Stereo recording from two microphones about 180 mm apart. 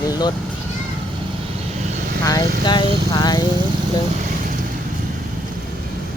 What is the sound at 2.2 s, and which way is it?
Speech, 20° left (ahead or behind).